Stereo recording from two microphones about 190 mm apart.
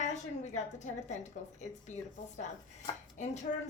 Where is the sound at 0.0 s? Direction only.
40° left (ahead or behind).